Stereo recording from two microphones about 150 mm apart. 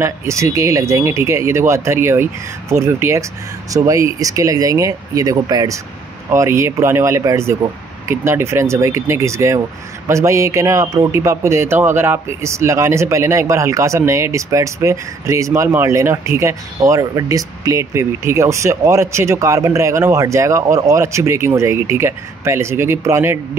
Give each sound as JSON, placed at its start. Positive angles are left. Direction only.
{"t": 0.0, "sound": "a man's voice", "side_deg": -20}